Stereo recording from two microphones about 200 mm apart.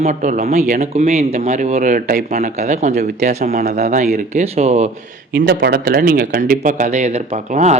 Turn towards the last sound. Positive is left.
turn(degrees=-35)  # may be behind; listen again after turning